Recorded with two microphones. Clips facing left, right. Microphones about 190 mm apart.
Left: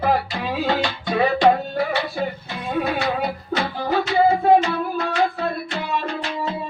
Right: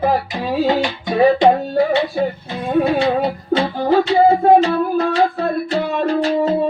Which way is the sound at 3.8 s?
35° right (ahead or behind).